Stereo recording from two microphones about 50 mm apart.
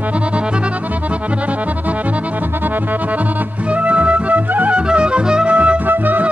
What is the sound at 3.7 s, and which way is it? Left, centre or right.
Music, right.